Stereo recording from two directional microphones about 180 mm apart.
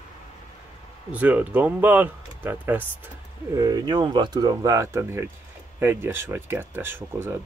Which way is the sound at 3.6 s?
25° right (ahead or behind).